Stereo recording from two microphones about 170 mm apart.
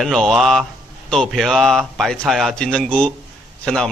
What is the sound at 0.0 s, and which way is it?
Speech, centre (ahead or behind).